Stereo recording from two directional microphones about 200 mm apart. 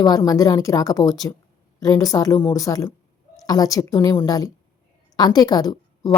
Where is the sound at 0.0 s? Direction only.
20° left (ahead or behind).